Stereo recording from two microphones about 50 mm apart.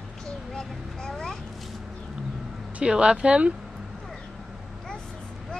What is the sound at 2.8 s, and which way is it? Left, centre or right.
Speech, centre.